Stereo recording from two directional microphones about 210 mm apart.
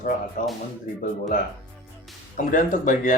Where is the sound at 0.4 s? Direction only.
35° left (ahead or behind).